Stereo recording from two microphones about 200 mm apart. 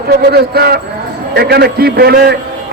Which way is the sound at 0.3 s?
50° right (ahead or behind).